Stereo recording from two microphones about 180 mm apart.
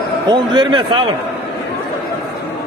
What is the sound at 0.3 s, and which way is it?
Speech, 25° right (ahead or behind).